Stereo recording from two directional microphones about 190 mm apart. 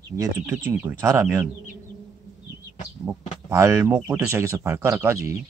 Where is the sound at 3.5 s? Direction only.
15° right (ahead or behind).